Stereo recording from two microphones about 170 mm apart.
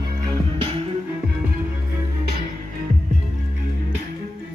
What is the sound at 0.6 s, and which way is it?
Music, 30° right (ahead or behind).